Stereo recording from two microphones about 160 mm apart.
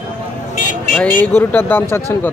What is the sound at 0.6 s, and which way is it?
Vehicle, 55° left (ahead or behind).